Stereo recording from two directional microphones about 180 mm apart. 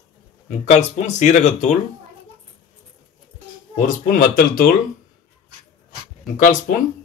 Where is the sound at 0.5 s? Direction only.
40° left (ahead or behind).